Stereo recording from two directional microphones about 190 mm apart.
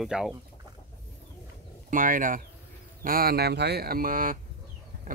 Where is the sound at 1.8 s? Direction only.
45° right (ahead or behind).